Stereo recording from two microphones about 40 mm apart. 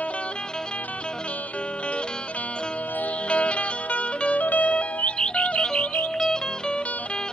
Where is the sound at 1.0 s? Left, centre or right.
Left.